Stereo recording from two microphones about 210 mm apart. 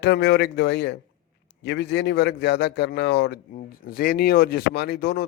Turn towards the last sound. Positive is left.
turn(degrees=50)  # may be behind; listen again after turning